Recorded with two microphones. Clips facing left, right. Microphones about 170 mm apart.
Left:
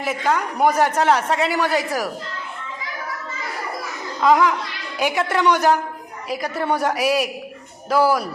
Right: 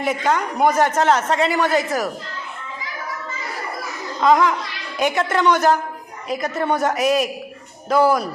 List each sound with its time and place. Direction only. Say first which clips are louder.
0.0 s a man's voice: right 1 dB; 5° left (ahead or behind)
4.2 s a man's voice: even; 5° left (ahead or behind)